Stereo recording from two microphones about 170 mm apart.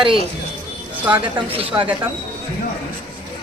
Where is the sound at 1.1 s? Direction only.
10° right (ahead or behind).